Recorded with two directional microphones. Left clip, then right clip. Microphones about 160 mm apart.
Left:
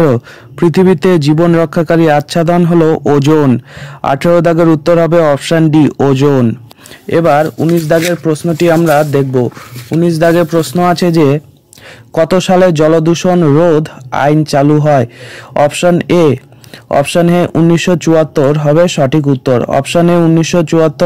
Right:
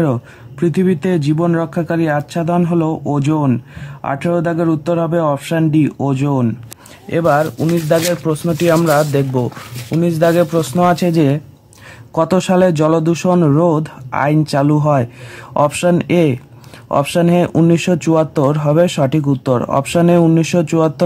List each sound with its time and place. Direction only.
0.6 s speech: 40° left (ahead or behind)
8.2 s speech: 25° left (ahead or behind)
9.3 s speech: 20° left (ahead or behind)